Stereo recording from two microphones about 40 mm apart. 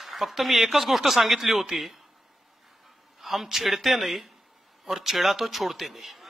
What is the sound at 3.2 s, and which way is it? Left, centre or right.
Speech, centre.